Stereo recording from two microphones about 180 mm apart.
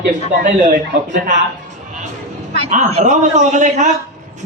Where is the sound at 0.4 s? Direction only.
45° right (ahead or behind).